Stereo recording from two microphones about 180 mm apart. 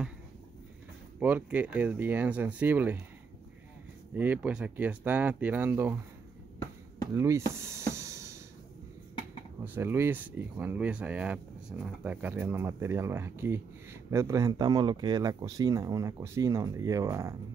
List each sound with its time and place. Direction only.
1.2 s speech: 10° right (ahead or behind)
4.1 s speech: 10° right (ahead or behind)
7.2 s speech: 15° right (ahead or behind)
7.9 s music: 15° right (ahead or behind)
9.8 s speech: 15° right (ahead or behind)